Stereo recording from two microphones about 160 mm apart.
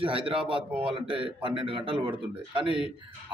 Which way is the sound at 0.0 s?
35° right (ahead or behind).